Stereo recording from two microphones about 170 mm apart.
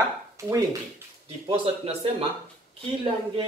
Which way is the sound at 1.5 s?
35° right (ahead or behind).